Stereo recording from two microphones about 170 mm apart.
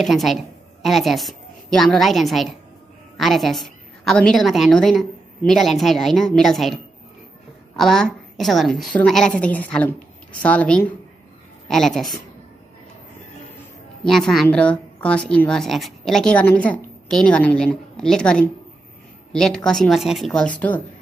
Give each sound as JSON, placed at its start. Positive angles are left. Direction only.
{"t": 0.0, "sound": "a woman's voice", "side_deg": 0}
{"t": 14.0, "sound": "a woman's voice", "side_deg": 0}